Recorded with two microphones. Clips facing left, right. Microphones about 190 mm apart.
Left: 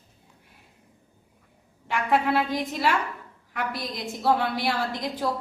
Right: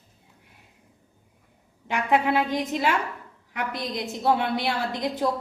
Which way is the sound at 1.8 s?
15° right (ahead or behind).